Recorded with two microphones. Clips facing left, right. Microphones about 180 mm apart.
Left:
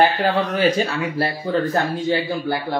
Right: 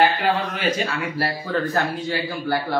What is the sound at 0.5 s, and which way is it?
Speech, 35° left (ahead or behind).